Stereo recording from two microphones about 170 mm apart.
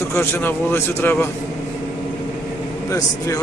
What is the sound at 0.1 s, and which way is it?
Speech, 15° left (ahead or behind).